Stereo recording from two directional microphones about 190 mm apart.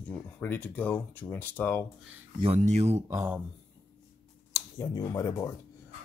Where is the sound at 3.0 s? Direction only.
15° right (ahead or behind).